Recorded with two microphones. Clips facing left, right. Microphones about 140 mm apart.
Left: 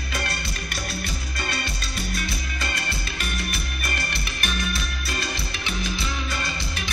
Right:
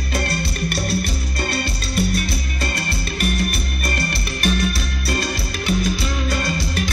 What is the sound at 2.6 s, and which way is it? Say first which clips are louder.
Music: right 5 dB; 40° right (ahead or behind).